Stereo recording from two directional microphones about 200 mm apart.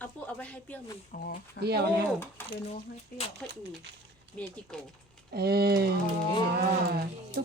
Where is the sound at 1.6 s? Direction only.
60° left (ahead or behind).